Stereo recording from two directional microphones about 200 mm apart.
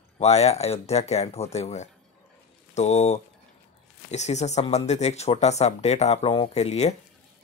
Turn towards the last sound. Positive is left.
turn(degrees=35)  # may be behind; listen again after turning